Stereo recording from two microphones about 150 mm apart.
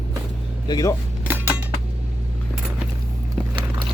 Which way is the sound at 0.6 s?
25° left (ahead or behind).